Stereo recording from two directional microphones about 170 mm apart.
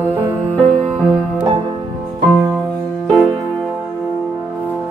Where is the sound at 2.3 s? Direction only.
15° right (ahead or behind).